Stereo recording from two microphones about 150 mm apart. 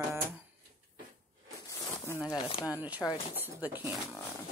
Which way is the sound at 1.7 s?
20° left (ahead or behind).